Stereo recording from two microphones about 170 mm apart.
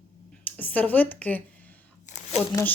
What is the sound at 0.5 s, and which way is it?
Speech, 10° left (ahead or behind).